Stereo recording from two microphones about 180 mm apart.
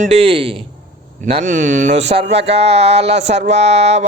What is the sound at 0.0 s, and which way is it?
Speech, 35° right (ahead or behind).